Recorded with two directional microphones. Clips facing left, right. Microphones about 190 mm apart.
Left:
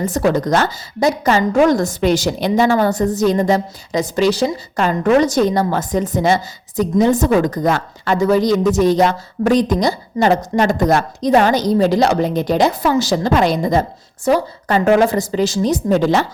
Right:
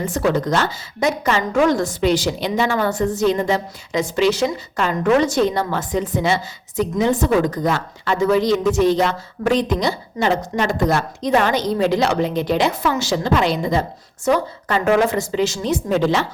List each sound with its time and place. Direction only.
0.0 s a woman's voice: 40° left (ahead or behind)